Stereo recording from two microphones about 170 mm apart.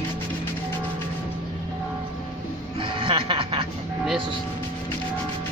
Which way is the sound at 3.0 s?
30° right (ahead or behind).